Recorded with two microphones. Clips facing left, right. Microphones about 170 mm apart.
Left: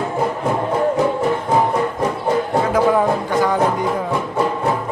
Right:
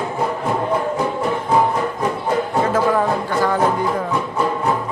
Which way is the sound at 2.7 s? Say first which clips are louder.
Left 3 dB; 15° left (ahead or behind).